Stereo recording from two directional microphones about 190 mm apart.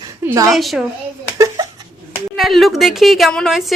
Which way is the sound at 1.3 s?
15° right (ahead or behind).